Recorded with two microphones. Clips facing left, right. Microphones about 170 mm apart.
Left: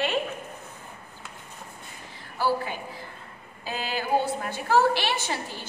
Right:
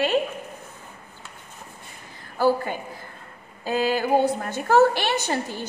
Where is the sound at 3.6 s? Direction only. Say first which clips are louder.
Right 7 dB; 45° right (ahead or behind).